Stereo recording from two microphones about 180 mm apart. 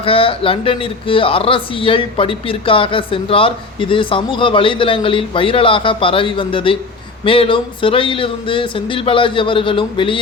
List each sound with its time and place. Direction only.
0.0 s speech: 30° left (ahead or behind)